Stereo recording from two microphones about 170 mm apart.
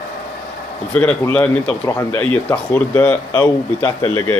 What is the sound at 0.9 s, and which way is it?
Speech, 5° left (ahead or behind).